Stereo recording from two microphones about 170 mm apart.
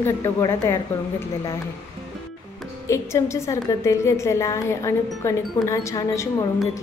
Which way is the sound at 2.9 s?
15° left (ahead or behind).